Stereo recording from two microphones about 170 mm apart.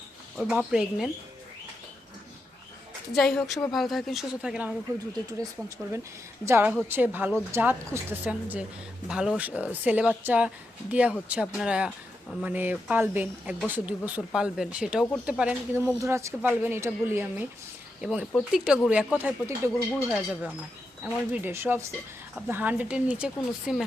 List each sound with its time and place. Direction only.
0.3 s speech: 5° right (ahead or behind)
3.1 s speech: centre (ahead or behind)
5.4 s a woman's voice: 20° right (ahead or behind)